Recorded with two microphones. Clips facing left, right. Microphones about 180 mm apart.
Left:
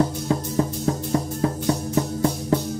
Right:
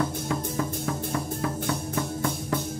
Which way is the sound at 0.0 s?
30° left (ahead or behind).